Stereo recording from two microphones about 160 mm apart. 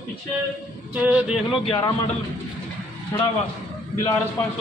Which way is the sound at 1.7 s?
25° left (ahead or behind).